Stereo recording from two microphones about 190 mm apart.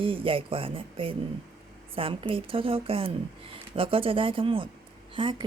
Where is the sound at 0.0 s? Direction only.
30° right (ahead or behind).